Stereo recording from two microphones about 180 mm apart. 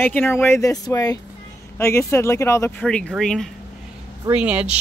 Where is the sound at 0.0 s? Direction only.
10° left (ahead or behind).